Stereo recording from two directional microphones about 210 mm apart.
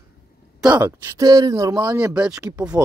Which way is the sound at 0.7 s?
15° right (ahead or behind).